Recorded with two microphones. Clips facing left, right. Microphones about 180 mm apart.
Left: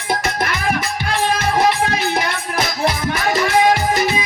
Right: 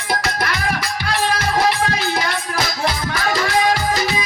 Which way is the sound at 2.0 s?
20° left (ahead or behind).